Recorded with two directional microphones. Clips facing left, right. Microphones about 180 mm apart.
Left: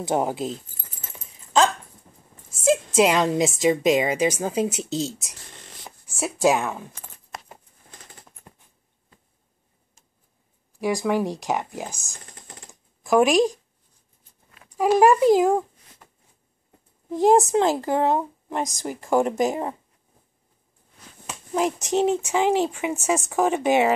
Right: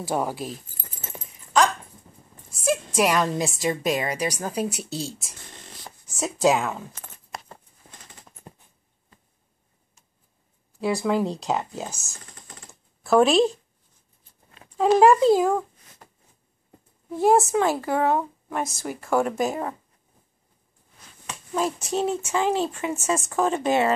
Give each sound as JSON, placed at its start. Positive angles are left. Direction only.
{"t": 0.0, "sound": "a woman's voice", "side_deg": 20}
{"t": 2.6, "sound": "a woman's voice", "side_deg": 25}
{"t": 6.4, "sound": "speech", "side_deg": 15}
{"t": 10.8, "sound": "speech", "side_deg": 15}
{"t": 14.8, "sound": "speech", "side_deg": 15}
{"t": 16.0, "sound": "a sound", "side_deg": -40}
{"t": 17.1, "sound": "speech", "side_deg": 15}
{"t": 21.5, "sound": "speech", "side_deg": 20}